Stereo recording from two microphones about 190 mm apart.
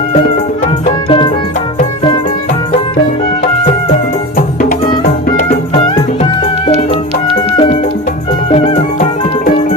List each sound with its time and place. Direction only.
1.0 s music: 25° left (ahead or behind)
7.5 s music: 25° left (ahead or behind)